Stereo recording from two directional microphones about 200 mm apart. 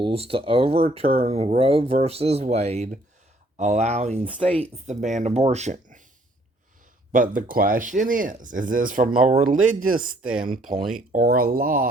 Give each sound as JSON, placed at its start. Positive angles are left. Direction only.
{"t": 0.0, "sound": "speech", "side_deg": -30}
{"t": 7.1, "sound": "speech", "side_deg": -45}